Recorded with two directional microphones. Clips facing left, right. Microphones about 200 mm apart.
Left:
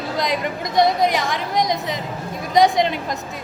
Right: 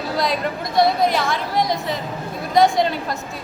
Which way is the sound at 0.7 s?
20° left (ahead or behind).